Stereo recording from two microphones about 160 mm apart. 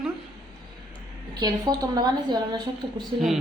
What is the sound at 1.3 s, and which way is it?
Speech, 25° right (ahead or behind).